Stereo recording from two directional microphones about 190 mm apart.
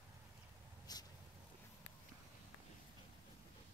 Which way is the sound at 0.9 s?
20° left (ahead or behind).